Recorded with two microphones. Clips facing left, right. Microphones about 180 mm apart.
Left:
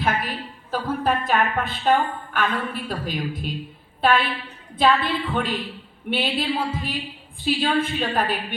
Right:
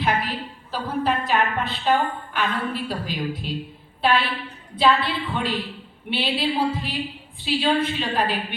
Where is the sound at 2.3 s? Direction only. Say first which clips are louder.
Left 1 dB; 50° left (ahead or behind).